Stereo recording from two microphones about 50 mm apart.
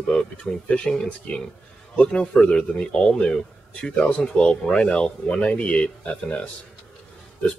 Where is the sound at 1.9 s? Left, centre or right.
Centre.